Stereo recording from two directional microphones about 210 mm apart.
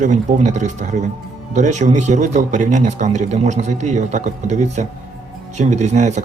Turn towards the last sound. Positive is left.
turn(degrees=-35)  # may be behind; listen again after turning